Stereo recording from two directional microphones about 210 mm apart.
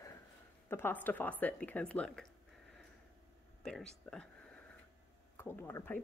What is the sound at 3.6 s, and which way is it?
A woman's voice, 5° left (ahead or behind).